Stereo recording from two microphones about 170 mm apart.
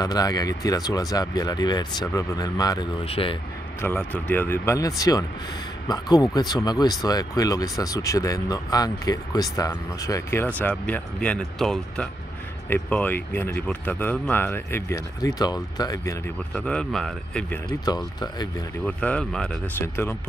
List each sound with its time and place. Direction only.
0.0 s speech: 20° left (ahead or behind)
3.8 s speech: 10° left (ahead or behind)
16.5 s speech: 5° left (ahead or behind)
17.8 s speech: 25° left (ahead or behind)
18.9 s speech: 5° left (ahead or behind)